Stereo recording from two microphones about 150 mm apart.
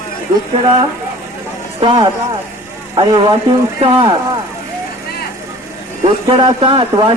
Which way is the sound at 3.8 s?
35° right (ahead or behind).